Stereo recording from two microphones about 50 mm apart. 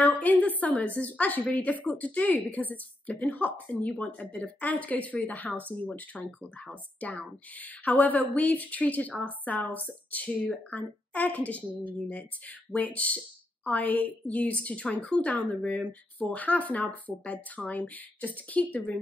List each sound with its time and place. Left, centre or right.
0.2 s a woman's voice: left